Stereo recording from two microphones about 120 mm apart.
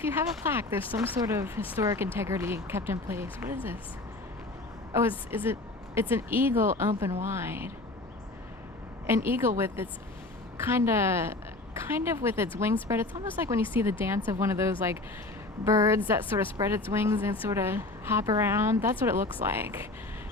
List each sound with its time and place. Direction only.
0.0 s a woman's voice: 20° right (ahead or behind)
4.9 s a woman's voice: 20° right (ahead or behind)
9.0 s a woman's voice: 20° right (ahead or behind)